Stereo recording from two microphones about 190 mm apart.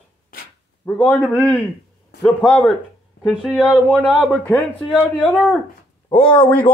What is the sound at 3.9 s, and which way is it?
Speech, 5° left (ahead or behind).